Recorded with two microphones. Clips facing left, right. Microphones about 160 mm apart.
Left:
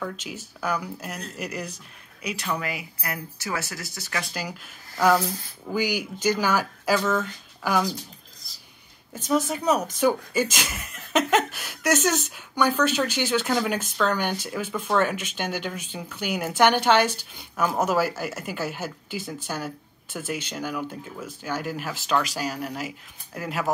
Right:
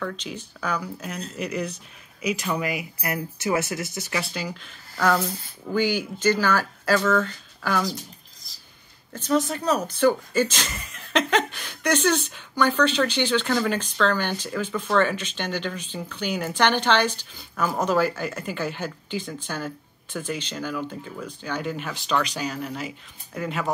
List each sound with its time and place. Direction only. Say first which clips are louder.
0.0 s speech: right 2 dB; 5° left (ahead or behind)
2.4 s speech: right 3 dB; 15° right (ahead or behind)
4.1 s speech: right 1 dB; 5° right (ahead or behind)
4.4 s speech: right 1 dB; 10° left (ahead or behind)
9.1 s speech: right 1 dB; 10° left (ahead or behind)